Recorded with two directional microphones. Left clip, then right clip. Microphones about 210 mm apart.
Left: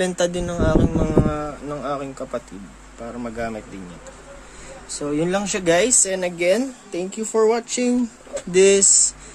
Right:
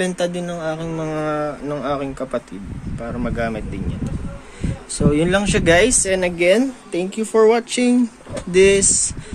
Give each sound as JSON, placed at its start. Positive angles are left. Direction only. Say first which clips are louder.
{"t": 0.0, "sound": "speech", "louder": "even", "side_deg": 25}
{"t": 1.2, "sound": "speech", "louder": "right 4 dB", "side_deg": 5}
{"t": 4.9, "sound": "speech", "louder": "right 5 dB", "side_deg": 0}
{"t": 8.5, "sound": "speech", "louder": "right 1 dB", "side_deg": 15}